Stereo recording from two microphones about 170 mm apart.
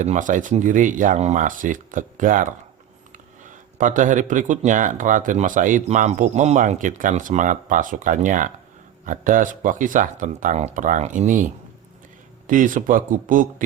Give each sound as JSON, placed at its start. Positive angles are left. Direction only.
{"t": 0.0, "sound": "speech", "side_deg": -45}
{"t": 3.8, "sound": "speech", "side_deg": -50}
{"t": 12.5, "sound": "speech", "side_deg": -50}